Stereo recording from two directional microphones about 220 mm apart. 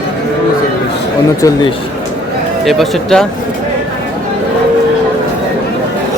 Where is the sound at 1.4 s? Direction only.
15° left (ahead or behind).